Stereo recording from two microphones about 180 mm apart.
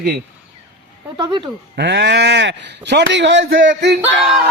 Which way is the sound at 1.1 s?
25° right (ahead or behind).